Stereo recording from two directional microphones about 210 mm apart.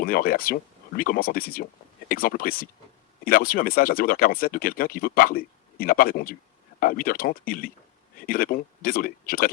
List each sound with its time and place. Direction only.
0.0 s speech: 45° left (ahead or behind)